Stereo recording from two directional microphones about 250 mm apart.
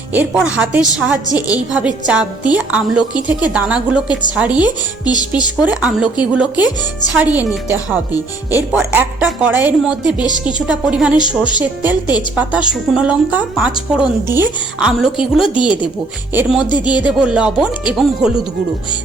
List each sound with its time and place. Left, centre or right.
0.1 s a woman's voice: centre
5.6 s a woman's voice: centre
16.6 s speech: centre
17.0 s a woman's voice: centre